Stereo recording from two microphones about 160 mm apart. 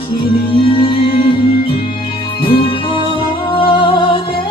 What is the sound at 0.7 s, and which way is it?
Music, 30° left (ahead or behind).